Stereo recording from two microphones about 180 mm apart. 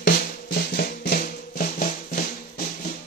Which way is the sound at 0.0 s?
55° left (ahead or behind).